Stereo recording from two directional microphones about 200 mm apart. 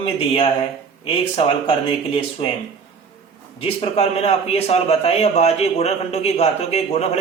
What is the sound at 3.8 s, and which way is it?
A man's voice, 30° left (ahead or behind).